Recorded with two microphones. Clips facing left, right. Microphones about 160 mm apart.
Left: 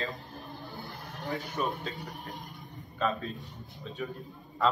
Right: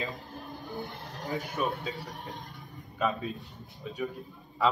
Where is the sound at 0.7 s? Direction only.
20° right (ahead or behind).